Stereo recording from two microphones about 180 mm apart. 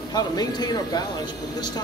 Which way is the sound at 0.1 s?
20° left (ahead or behind).